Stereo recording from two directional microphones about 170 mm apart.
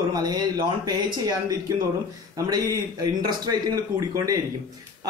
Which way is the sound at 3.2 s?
20° right (ahead or behind).